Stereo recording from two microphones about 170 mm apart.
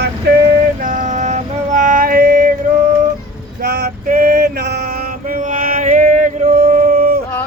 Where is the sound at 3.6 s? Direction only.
75° right (ahead or behind).